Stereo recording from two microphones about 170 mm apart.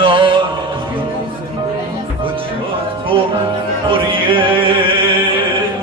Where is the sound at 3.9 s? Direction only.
30° right (ahead or behind).